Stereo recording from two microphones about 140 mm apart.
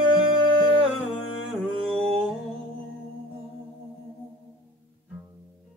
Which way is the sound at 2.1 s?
5° left (ahead or behind).